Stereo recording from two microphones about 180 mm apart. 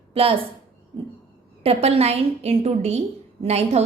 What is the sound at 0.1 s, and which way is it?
Speech, 30° right (ahead or behind).